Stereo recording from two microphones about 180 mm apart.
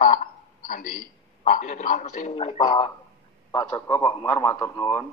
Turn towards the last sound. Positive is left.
turn(degrees=20)  # may be behind; listen again after turning